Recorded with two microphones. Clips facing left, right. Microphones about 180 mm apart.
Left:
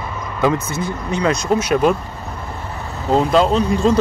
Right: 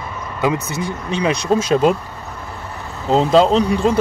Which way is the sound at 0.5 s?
70° right (ahead or behind).